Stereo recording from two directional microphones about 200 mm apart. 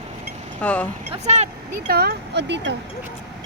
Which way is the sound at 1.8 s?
50° right (ahead or behind).